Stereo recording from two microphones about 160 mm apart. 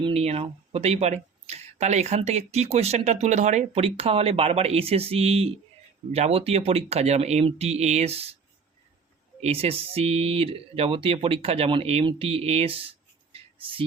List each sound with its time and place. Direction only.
0.0 s speech: 40° right (ahead or behind)
9.4 s speech: 40° right (ahead or behind)
13.3 s a sound: 35° right (ahead or behind)